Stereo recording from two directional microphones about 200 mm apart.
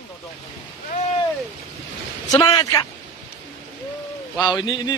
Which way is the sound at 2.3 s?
20° left (ahead or behind).